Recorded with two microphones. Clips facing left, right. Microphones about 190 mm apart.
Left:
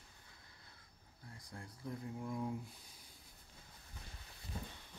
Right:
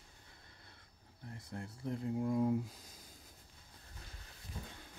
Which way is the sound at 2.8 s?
45° right (ahead or behind).